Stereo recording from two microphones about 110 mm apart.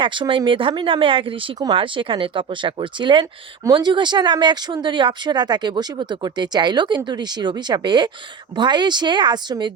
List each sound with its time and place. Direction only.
0.0 s speech: 50° right (ahead or behind)